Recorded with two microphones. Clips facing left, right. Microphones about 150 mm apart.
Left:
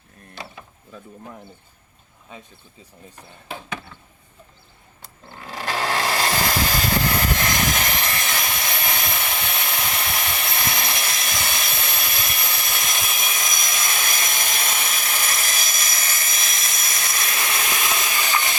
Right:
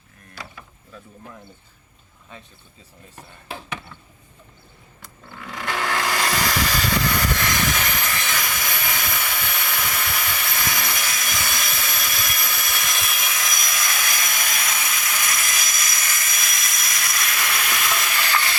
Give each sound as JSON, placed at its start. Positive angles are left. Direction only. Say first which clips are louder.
{"t": 5.3, "sound": "vehicle", "louder": "left 1 dB", "side_deg": 30}